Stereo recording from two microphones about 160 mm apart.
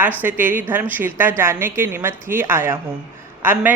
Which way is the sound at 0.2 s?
10° right (ahead or behind).